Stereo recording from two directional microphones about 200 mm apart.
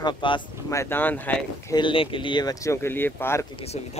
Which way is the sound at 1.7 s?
25° left (ahead or behind).